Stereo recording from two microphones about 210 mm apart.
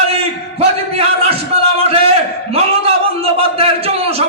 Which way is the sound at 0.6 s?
30° right (ahead or behind).